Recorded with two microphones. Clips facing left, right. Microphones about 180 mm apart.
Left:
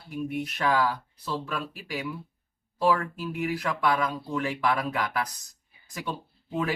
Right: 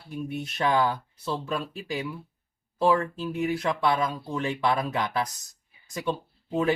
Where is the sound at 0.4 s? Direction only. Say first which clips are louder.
Right 2 dB; 25° right (ahead or behind).